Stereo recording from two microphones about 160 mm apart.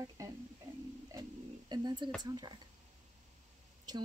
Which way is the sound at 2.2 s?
25° right (ahead or behind).